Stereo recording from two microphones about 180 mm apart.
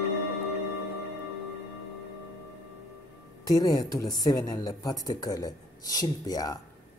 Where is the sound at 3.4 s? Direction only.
20° left (ahead or behind).